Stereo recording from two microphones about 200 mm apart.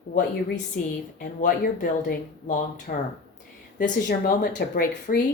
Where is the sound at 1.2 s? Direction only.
45° left (ahead or behind).